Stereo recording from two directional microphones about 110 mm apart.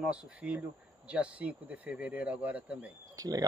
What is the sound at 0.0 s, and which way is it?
Speech, 10° right (ahead or behind).